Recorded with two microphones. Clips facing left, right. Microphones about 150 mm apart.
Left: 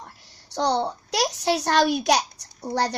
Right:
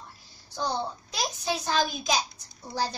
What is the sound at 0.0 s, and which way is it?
A child's voice, 75° left (ahead or behind).